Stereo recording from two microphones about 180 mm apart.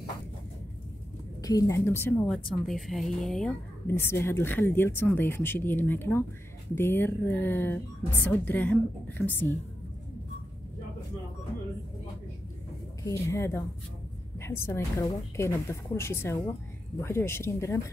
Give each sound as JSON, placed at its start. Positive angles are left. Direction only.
{"t": 1.4, "sound": "a woman's voice", "side_deg": 20}
{"t": 3.8, "sound": "speech", "side_deg": 15}
{"t": 13.0, "sound": "speech", "side_deg": 15}